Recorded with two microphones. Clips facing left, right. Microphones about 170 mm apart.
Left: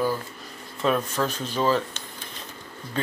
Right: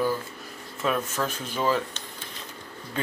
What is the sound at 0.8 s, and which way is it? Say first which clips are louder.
Speech: left 3 dB; 5° right (ahead or behind).